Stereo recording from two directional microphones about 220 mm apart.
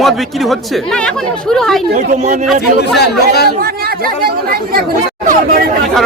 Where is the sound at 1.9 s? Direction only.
35° right (ahead or behind).